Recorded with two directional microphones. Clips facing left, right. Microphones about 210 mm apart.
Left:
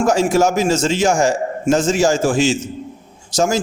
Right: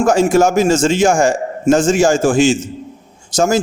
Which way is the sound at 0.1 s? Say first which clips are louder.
Right 4 dB; 50° right (ahead or behind).